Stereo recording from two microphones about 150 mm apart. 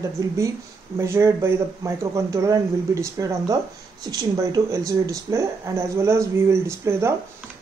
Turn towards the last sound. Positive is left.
turn(degrees=-15)  # may be behind; listen again after turning